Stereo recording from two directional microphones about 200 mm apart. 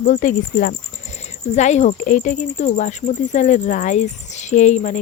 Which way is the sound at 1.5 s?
35° left (ahead or behind).